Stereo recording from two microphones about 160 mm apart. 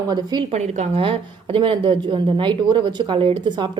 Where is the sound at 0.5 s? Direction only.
40° right (ahead or behind).